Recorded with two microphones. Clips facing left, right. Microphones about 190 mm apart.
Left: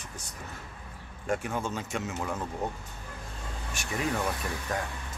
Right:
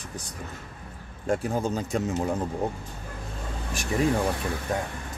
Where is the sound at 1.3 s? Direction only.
35° right (ahead or behind).